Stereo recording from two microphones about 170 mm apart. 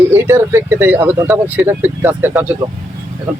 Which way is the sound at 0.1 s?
15° right (ahead or behind).